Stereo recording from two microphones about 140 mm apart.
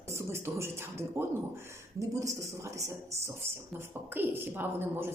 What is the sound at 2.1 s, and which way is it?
A woman's voice, 20° right (ahead or behind).